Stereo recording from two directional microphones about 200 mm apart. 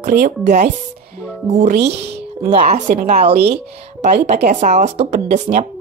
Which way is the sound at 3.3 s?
55° right (ahead or behind).